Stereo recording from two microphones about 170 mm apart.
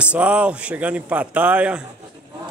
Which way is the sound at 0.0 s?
5° right (ahead or behind).